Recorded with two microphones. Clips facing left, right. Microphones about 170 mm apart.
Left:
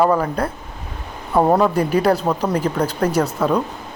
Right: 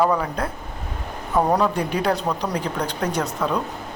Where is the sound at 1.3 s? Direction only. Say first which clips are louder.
Left 4 dB; 25° left (ahead or behind).